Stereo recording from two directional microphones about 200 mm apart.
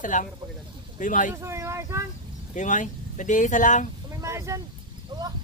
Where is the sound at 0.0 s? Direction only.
40° left (ahead or behind).